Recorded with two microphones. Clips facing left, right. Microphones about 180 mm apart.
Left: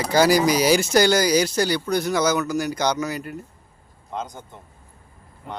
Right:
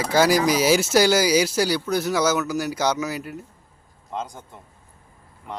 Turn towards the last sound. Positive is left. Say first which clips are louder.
# even
turn(degrees=-5)  # may be behind; listen again after turning